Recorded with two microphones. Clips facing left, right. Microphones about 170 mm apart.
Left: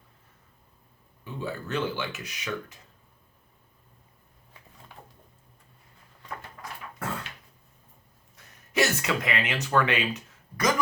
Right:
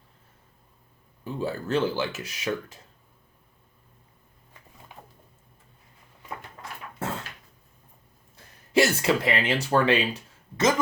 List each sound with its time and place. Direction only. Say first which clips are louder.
1.2 s speech: right 4 dB; 35° right (ahead or behind)
7.0 s dog: right 2 dB; 25° right (ahead or behind)
8.4 s a sound: right 4 dB; 30° right (ahead or behind)